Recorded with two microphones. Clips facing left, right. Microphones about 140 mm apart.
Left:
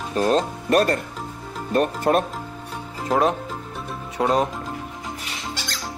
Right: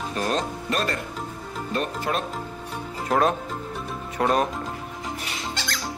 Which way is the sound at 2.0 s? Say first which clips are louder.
Left 7 dB; 50° left (ahead or behind).